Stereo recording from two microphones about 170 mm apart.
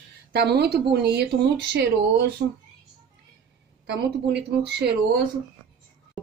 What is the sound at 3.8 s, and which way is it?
Speech, 85° right.